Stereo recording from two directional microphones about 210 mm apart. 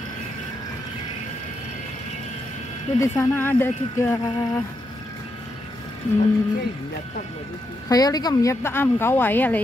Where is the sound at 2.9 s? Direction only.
15° left (ahead or behind).